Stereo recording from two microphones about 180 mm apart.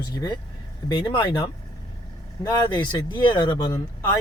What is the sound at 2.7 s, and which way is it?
Speech, 25° left (ahead or behind).